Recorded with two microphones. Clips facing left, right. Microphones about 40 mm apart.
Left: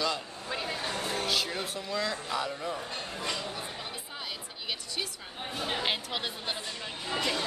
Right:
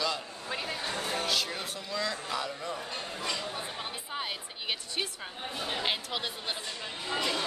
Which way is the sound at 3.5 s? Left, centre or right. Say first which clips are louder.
Right 1 dB; centre.